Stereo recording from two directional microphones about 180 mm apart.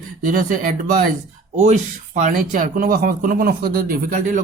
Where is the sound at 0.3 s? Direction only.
50° right (ahead or behind).